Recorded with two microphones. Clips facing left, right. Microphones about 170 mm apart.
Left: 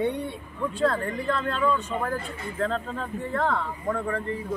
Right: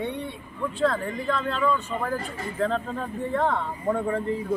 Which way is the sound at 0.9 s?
Centre (ahead or behind).